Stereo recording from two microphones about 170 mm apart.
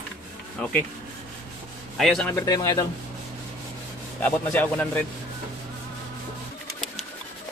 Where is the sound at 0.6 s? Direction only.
5° left (ahead or behind).